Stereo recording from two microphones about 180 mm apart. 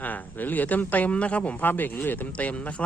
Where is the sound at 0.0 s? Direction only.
10° left (ahead or behind).